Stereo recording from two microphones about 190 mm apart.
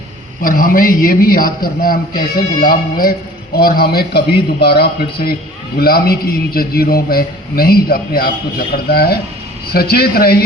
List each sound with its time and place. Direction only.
0.4 s a man's voice: 50° left (ahead or behind)